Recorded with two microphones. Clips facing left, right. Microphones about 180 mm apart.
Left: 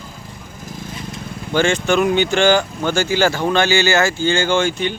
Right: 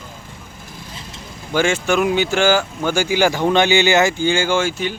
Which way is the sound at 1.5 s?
10° right (ahead or behind).